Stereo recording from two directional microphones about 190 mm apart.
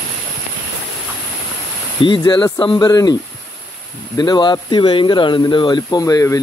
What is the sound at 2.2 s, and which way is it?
Speech, 25° left (ahead or behind).